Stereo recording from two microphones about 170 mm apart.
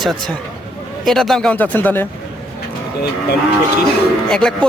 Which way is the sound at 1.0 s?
Centre (ahead or behind).